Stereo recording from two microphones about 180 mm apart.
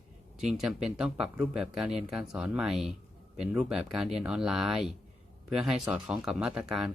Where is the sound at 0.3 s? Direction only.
5° right (ahead or behind).